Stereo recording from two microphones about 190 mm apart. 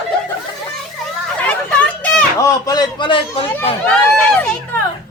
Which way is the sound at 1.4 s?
5° left (ahead or behind).